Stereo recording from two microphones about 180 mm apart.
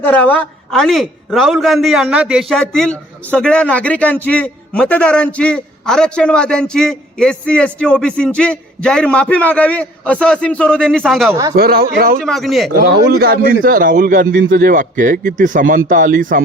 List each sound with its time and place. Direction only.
0.0 s a man's voice: 10° left (ahead or behind)
11.5 s speech: 60° right (ahead or behind)
12.2 s a man's voice: centre (ahead or behind)
12.9 s a man's voice: 65° right (ahead or behind); by 16.4 s 50° right (ahead or behind)